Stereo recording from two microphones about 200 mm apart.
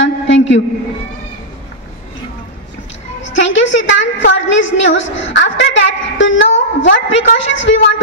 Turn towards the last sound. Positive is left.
turn(degrees=65)  # may be behind; listen again after turning